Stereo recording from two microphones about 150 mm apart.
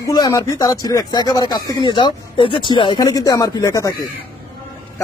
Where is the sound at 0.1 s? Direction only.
25° left (ahead or behind).